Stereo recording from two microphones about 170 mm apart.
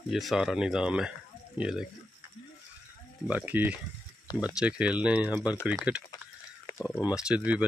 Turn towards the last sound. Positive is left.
turn(degrees=-10)  # may be behind; listen again after turning